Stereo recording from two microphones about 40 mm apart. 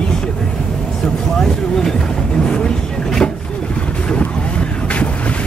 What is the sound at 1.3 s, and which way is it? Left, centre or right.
Speech, centre.